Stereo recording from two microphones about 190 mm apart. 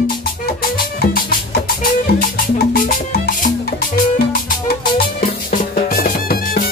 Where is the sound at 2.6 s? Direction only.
50° left (ahead or behind).